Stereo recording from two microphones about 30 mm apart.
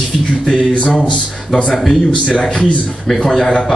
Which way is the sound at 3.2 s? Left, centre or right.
Centre.